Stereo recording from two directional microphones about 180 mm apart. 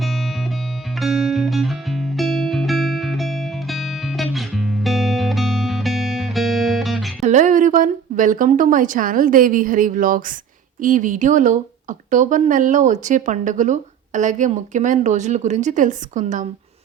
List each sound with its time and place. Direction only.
0.0 s music: centre (ahead or behind)
7.2 s speech: 40° right (ahead or behind)